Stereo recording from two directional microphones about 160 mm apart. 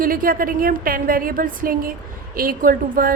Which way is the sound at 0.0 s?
60° right (ahead or behind).